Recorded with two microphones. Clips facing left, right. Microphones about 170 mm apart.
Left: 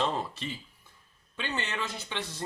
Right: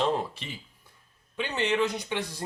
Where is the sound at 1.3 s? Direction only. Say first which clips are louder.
Right 7 dB; 15° right (ahead or behind).